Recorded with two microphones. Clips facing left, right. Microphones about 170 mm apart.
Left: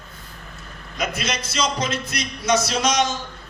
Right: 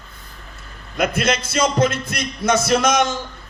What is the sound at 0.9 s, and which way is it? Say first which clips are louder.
A man's voice: right 7 dB; 55° right (ahead or behind).